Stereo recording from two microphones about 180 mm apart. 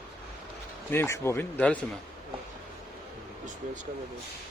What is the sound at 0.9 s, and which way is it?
Speech, 15° left (ahead or behind).